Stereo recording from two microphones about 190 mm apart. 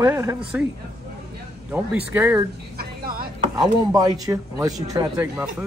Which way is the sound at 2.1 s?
10° right (ahead or behind).